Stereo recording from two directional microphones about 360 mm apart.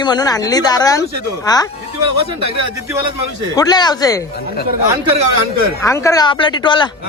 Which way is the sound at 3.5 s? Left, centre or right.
Centre.